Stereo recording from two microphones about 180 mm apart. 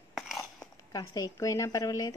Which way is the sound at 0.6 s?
20° left (ahead or behind).